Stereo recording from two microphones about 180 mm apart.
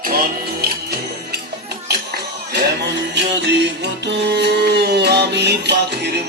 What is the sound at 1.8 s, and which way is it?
Music, 65° right (ahead or behind).